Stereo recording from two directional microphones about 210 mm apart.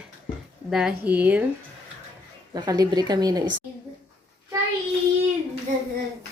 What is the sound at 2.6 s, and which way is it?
Speech, 20° right (ahead or behind).